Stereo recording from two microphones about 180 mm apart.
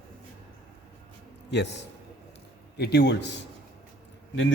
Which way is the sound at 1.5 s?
75° left (ahead or behind).